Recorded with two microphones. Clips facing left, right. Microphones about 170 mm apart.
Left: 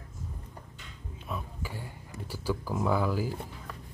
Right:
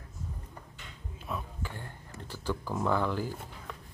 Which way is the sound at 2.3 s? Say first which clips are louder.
Left 2 dB; 10° left (ahead or behind).